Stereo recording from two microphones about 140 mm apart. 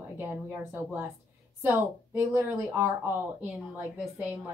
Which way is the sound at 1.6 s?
15° right (ahead or behind).